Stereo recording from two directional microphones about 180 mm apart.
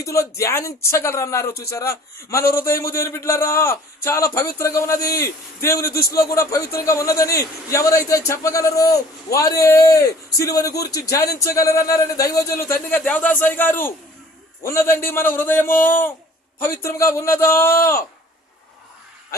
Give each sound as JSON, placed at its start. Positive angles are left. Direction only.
{"t": 0.0, "sound": "speech", "side_deg": 15}
{"t": 2.4, "sound": "a man's voice", "side_deg": 55}
{"t": 2.6, "sound": "speech", "side_deg": 15}
{"t": 5.9, "sound": "a man's voice", "side_deg": 60}
{"t": 6.3, "sound": "a man's voice", "side_deg": 15}